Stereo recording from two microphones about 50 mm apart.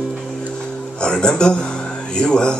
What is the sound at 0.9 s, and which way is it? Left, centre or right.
Speech, centre.